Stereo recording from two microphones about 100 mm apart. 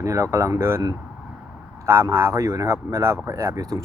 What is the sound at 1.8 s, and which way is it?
Speech, 25° right (ahead or behind).